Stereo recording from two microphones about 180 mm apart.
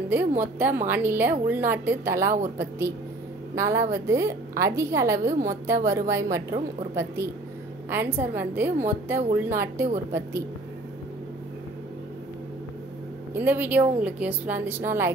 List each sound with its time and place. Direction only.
0.4 s a woman's voice: 10° right (ahead or behind)
13.3 s a woman's voice: 10° right (ahead or behind)